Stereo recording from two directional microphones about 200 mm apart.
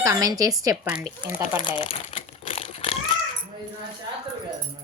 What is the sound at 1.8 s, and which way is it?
Crumpling, 30° left (ahead or behind).